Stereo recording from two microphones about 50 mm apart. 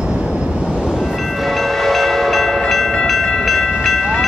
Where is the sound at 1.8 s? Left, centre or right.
Centre.